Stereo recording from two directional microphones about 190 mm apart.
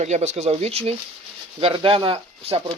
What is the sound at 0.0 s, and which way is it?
Speech, 35° right (ahead or behind).